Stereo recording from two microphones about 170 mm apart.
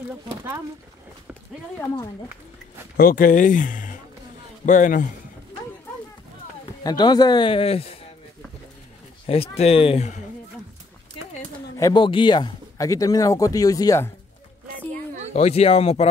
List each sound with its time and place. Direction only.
3.0 s speech: 55° left (ahead or behind)
6.8 s speech: 25° left (ahead or behind)
9.2 s speech: 35° left (ahead or behind)
11.7 s speech: 25° left (ahead or behind)
15.3 s speech: 40° left (ahead or behind)